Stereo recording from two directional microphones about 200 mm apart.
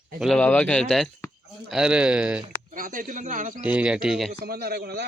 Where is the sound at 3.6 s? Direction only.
5° right (ahead or behind).